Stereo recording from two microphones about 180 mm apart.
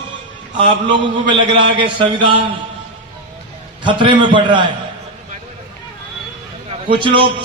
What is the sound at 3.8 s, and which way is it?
Speech, 25° right (ahead or behind).